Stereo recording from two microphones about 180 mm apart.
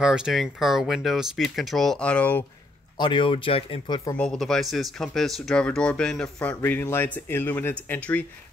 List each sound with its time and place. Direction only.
0.0 s speech: 5° right (ahead or behind)
3.0 s speech: 30° left (ahead or behind)
4.2 s speech: 5° left (ahead or behind)